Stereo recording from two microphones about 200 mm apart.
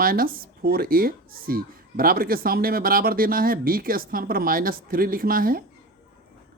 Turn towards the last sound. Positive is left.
turn(degrees=-45)  # may be behind; listen again after turning